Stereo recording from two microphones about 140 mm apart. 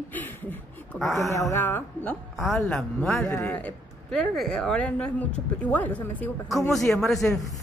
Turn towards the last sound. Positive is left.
turn(degrees=0)  # may be behind; listen again after turning